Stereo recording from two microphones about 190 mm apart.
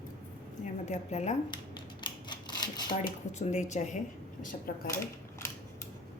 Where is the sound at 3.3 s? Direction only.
40° left (ahead or behind).